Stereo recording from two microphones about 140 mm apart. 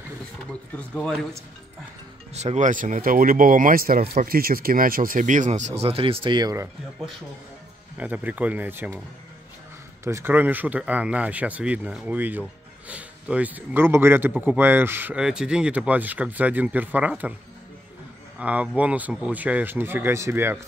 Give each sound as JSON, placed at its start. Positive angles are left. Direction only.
{"t": 0.9, "sound": "speech", "side_deg": 0}
{"t": 2.3, "sound": "speech", "side_deg": -55}
{"t": 8.0, "sound": "speech", "side_deg": -10}
{"t": 10.0, "sound": "speech", "side_deg": -15}
{"t": 18.4, "sound": "speech", "side_deg": -10}